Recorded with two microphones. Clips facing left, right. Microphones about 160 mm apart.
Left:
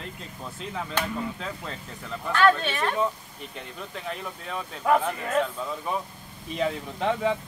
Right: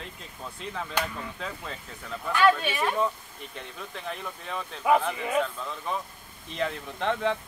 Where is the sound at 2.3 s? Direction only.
10° right (ahead or behind).